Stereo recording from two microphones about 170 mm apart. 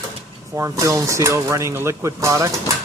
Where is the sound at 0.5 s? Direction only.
15° right (ahead or behind).